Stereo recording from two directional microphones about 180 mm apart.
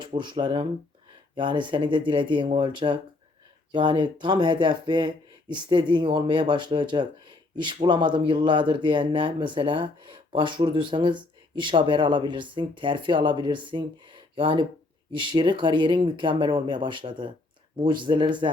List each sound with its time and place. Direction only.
0.0 s speech: 25° right (ahead or behind)